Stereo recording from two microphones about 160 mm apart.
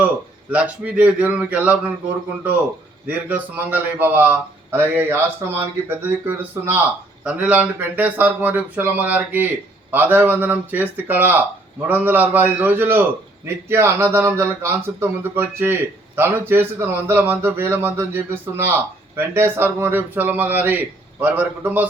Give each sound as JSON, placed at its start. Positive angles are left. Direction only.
{"t": 0.5, "sound": "speech", "side_deg": -10}
{"t": 3.1, "sound": "speech", "side_deg": -10}